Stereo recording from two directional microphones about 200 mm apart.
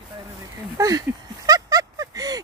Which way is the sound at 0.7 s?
15° right (ahead or behind).